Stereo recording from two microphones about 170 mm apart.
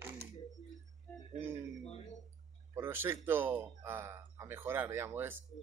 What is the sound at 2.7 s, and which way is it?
Speech, 15° right (ahead or behind).